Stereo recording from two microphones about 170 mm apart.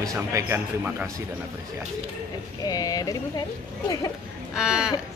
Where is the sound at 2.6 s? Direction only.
20° left (ahead or behind).